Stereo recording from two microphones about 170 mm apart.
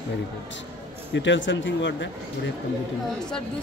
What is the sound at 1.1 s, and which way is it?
Speech, 90° left.